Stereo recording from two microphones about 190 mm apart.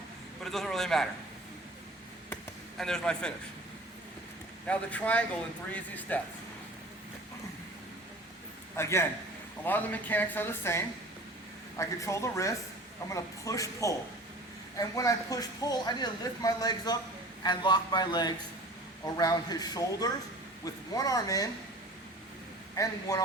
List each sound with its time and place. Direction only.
0.4 s a man's voice: centre (ahead or behind)
2.3 s chop: centre (ahead or behind)
4.6 s speech: 5° left (ahead or behind)
8.7 s a man's voice: 15° left (ahead or behind)
22.7 s speech: 20° left (ahead or behind)